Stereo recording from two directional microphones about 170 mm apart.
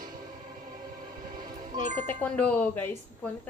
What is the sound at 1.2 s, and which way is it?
Music, 55° right (ahead or behind).